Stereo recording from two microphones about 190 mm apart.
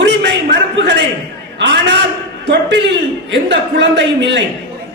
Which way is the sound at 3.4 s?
70° right (ahead or behind).